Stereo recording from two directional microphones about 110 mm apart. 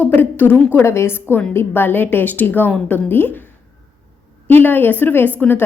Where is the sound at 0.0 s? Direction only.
15° left (ahead or behind).